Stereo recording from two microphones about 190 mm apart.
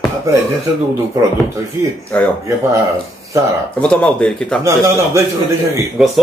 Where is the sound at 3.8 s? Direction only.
5° left (ahead or behind).